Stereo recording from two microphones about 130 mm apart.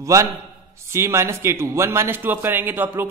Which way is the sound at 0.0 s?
25° right (ahead or behind).